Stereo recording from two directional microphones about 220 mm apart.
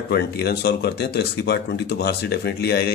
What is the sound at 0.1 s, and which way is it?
A man's voice, 50° left (ahead or behind).